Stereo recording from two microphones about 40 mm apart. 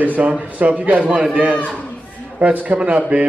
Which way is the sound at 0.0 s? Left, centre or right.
Right.